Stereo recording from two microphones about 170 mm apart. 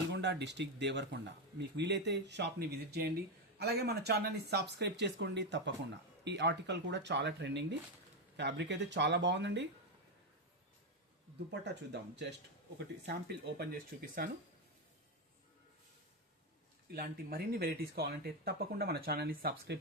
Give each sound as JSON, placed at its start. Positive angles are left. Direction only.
{"t": 0.1, "sound": "speech", "side_deg": -90}
{"t": 11.3, "sound": "speech", "side_deg": -85}
{"t": 13.1, "sound": "speech", "side_deg": -75}
{"t": 16.9, "sound": "speech", "side_deg": -65}